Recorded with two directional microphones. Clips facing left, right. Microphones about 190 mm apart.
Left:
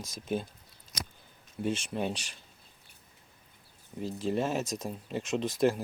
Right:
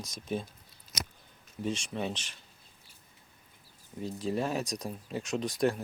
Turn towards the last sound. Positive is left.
turn(degrees=0)  # may be behind; listen again after turning